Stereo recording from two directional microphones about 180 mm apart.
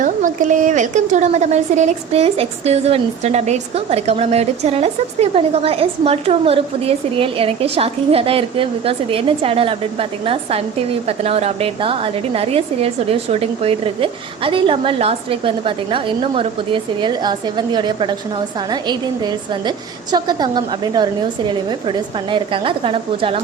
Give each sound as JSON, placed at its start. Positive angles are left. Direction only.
{"t": 0.0, "sound": "a woman's voice", "side_deg": -45}